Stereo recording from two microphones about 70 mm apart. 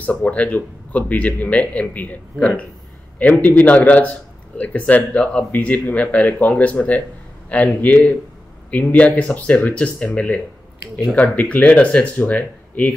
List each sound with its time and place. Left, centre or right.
0.0 s speech: left